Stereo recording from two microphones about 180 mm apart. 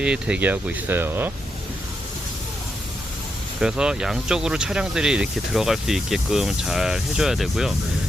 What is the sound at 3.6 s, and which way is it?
Speech, 5° right (ahead or behind).